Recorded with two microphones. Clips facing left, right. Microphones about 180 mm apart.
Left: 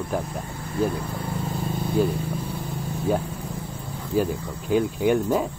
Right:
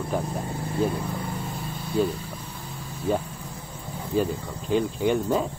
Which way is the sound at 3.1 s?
10° left (ahead or behind).